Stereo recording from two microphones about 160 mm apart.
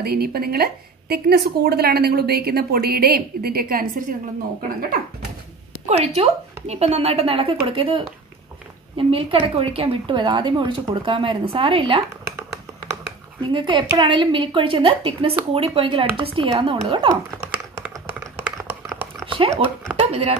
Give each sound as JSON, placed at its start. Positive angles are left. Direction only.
{"t": 0.0, "sound": "a woman's voice", "side_deg": -75}
{"t": 5.9, "sound": "a woman's voice", "side_deg": -40}
{"t": 13.5, "sound": "a woman's voice", "side_deg": -30}
{"t": 17.4, "sound": "computer keyboard", "side_deg": -15}
{"t": 19.2, "sound": "a sound", "side_deg": -35}
{"t": 20.1, "sound": "speech", "side_deg": -40}